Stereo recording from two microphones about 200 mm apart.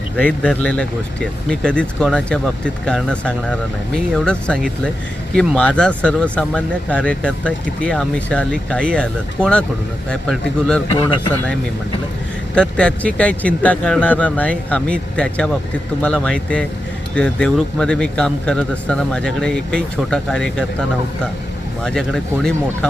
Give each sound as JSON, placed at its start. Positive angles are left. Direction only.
{"t": 0.2, "sound": "speech", "side_deg": 5}
{"t": 10.8, "sound": "a man's voice", "side_deg": 25}
{"t": 12.5, "sound": "speech", "side_deg": 5}
{"t": 21.8, "sound": "speech", "side_deg": 5}